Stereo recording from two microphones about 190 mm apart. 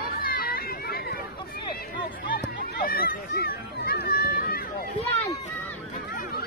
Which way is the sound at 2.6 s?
50° left (ahead or behind).